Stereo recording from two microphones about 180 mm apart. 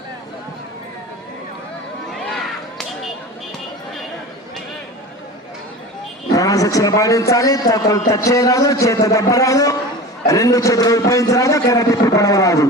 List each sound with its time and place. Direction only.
2.1 s run: centre (ahead or behind)
6.3 s a man's voice: 20° left (ahead or behind)